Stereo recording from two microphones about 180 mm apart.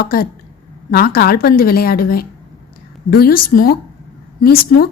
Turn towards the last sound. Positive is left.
turn(degrees=55)  # may be behind; listen again after turning